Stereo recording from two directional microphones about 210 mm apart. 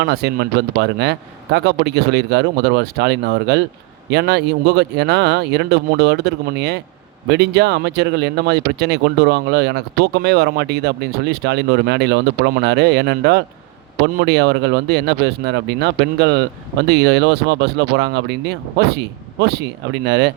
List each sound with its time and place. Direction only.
0.0 s speech: 50° right (ahead or behind)